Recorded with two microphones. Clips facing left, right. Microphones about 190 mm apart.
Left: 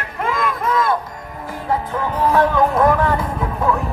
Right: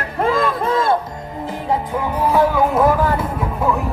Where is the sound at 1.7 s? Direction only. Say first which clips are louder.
Even; 10° right (ahead or behind).